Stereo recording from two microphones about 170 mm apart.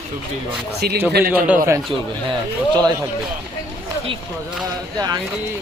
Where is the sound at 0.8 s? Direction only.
70° right (ahead or behind).